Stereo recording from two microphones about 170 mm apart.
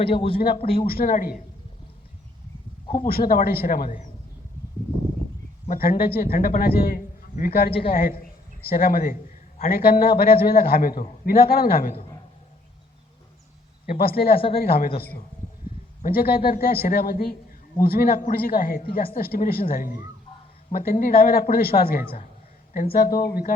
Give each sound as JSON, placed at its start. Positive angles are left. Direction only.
{"t": 0.0, "sound": "a man's voice", "side_deg": 35}
{"t": 0.9, "sound": "speech", "side_deg": 60}
{"t": 3.0, "sound": "speech", "side_deg": 60}
{"t": 5.6, "sound": "a man's voice", "side_deg": 55}
{"t": 7.7, "sound": "a man's voice", "side_deg": 30}
{"t": 7.9, "sound": "speech", "side_deg": 60}
{"t": 14.5, "sound": "speech", "side_deg": 60}
{"t": 16.0, "sound": "a man's voice", "side_deg": 55}